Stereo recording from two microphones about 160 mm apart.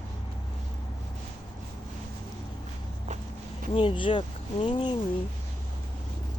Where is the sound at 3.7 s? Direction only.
30° left (ahead or behind).